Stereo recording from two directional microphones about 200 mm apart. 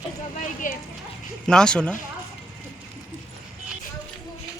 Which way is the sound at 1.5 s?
5° left (ahead or behind).